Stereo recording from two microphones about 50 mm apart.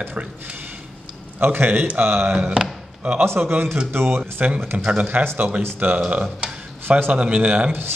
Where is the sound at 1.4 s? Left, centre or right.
Right.